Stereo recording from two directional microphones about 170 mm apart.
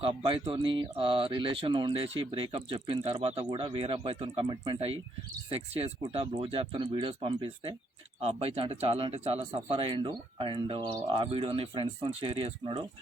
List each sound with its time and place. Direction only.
0.0 s speech: 35° right (ahead or behind)